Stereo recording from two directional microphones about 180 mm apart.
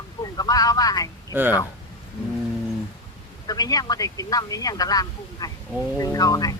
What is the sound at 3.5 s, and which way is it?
Speech, 20° left (ahead or behind).